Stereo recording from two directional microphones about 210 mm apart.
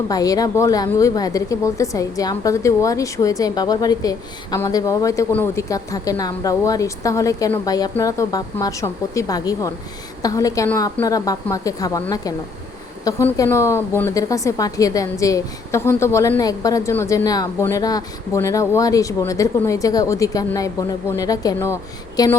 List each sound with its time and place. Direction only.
0.1 s a woman's voice: 15° left (ahead or behind)